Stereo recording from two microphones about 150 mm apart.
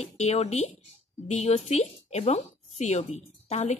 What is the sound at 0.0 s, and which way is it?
Speech, 45° left (ahead or behind).